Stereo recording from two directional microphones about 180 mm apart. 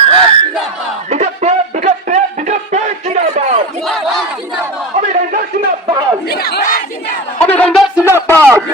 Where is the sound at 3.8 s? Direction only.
Centre (ahead or behind).